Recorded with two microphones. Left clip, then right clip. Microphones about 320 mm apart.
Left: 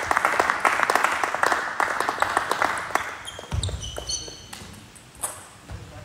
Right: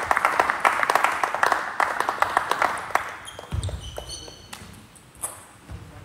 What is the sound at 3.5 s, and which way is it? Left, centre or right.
Basketball bounce, left.